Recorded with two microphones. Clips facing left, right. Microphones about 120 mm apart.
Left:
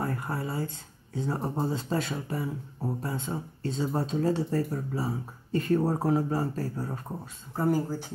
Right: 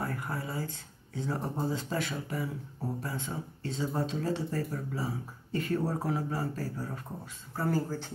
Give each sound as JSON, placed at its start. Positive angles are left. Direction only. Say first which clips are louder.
{"t": 0.0, "sound": "speech", "louder": "left 4 dB", "side_deg": 35}
{"t": 7.5, "sound": "speech", "louder": "left 4 dB", "side_deg": 15}